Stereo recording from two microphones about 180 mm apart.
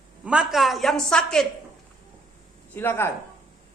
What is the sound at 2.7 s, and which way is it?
Speech, 10° left (ahead or behind).